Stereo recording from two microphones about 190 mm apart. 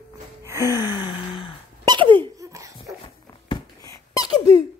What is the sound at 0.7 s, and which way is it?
Gasp, 20° left (ahead or behind).